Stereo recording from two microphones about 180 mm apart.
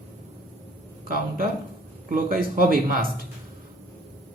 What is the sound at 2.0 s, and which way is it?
Speech, 50° right (ahead or behind).